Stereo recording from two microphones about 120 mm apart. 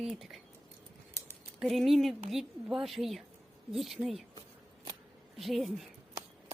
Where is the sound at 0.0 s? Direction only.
Centre (ahead or behind).